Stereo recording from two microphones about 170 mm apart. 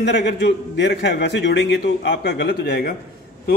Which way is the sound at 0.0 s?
90° left.